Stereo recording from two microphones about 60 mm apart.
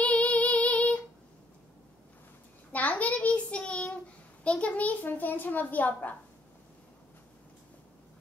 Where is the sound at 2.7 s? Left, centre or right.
Left.